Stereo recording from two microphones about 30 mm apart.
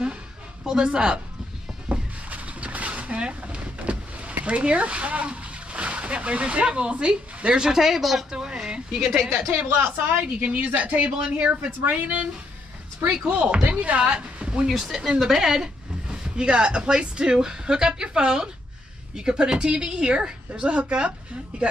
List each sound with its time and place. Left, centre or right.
0.9 s speech: right
1.9 s a sound: right
3.2 s a sound: right
3.8 s vehicle: right
4.5 s speech: right
7.6 s a woman's voice: centre
8.0 s speech: centre
8.3 s a sound: right
9.6 s speech: right
11.1 s a woman's voice: right
11.8 s speech: right
13.3 s speech: right
14.8 s a woman's voice: centre
16.1 s a woman's voice: right